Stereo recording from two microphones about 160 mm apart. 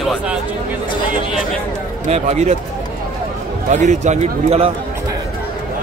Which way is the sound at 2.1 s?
45° right (ahead or behind).